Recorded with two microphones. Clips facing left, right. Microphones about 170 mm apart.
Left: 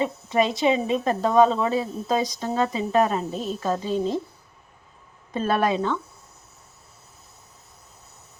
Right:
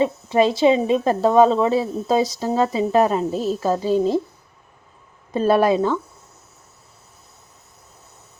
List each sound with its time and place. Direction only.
0.0 s speech: 30° right (ahead or behind)
5.5 s speech: 35° right (ahead or behind)